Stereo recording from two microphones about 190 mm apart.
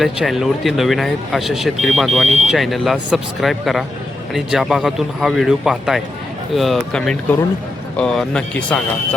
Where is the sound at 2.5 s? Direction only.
Centre (ahead or behind).